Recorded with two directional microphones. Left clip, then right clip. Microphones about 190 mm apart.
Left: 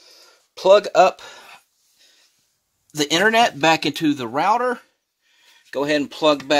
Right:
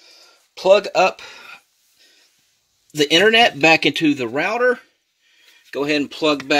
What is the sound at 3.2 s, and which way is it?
Speech, 60° left (ahead or behind).